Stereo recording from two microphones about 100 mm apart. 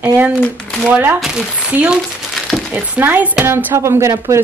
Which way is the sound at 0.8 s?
15° right (ahead or behind).